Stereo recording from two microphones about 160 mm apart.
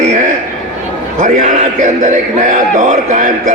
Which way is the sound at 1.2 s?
50° right (ahead or behind).